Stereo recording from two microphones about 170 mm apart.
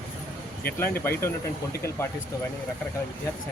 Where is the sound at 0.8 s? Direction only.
15° left (ahead or behind).